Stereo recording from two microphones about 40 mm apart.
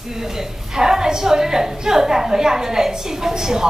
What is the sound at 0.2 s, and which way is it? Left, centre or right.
A woman's voice, centre.